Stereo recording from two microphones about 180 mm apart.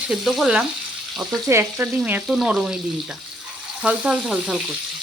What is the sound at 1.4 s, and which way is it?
Frying, 15° right (ahead or behind).